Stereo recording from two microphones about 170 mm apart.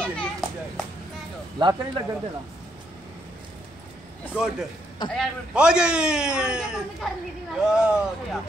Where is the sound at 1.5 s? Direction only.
25° right (ahead or behind).